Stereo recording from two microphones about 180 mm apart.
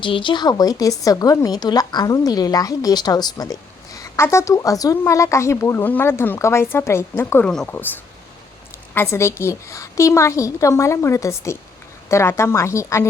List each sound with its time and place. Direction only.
0.0 s a woman's voice: 25° left (ahead or behind); by 7.9 s 5° left (ahead or behind)
9.0 s a woman's voice: 15° left (ahead or behind)